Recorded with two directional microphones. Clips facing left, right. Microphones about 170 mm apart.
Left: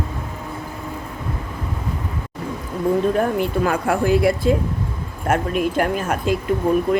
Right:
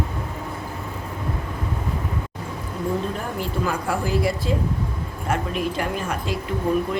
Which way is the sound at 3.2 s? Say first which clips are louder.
Left 7 dB; 60° left (ahead or behind).